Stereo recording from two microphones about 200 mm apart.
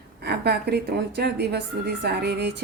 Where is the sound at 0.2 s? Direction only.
55° right (ahead or behind).